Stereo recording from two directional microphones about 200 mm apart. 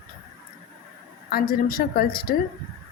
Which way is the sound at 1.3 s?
45° left (ahead or behind).